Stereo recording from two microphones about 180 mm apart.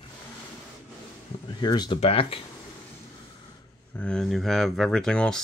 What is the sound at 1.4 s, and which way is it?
Speech, 25° left (ahead or behind).